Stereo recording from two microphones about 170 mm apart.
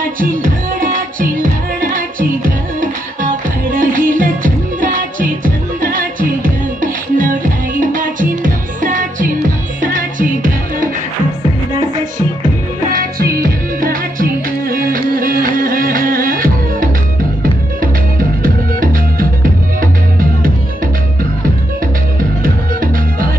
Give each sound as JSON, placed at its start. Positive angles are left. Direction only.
{"t": 0.2, "sound": "music", "side_deg": -50}
{"t": 12.9, "sound": "music", "side_deg": -60}
{"t": 18.4, "sound": "music", "side_deg": -55}
{"t": 22.4, "sound": "music", "side_deg": -55}